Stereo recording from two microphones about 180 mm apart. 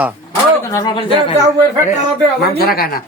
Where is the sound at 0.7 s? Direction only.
20° left (ahead or behind).